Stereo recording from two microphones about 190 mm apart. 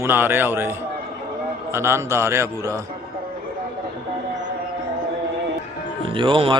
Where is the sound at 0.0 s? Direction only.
10° right (ahead or behind).